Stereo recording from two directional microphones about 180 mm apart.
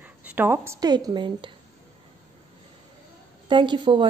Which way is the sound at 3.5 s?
25° right (ahead or behind).